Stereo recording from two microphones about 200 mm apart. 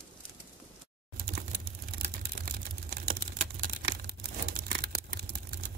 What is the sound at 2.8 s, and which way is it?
Typing, 50° right (ahead or behind).